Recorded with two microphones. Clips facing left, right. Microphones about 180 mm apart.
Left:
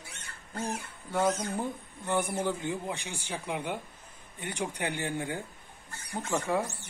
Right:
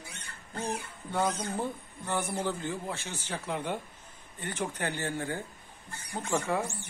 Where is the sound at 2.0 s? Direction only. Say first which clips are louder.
Left 2 dB; 15° left (ahead or behind).